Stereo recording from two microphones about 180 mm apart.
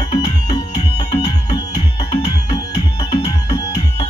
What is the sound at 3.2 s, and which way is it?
Music, 20° left (ahead or behind).